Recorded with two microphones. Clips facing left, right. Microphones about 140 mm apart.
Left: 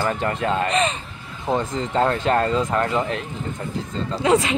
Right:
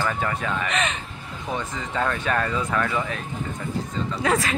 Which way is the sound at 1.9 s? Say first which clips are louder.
Left 5 dB; 30° left (ahead or behind).